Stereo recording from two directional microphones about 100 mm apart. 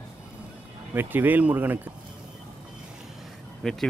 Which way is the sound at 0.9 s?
20° right (ahead or behind).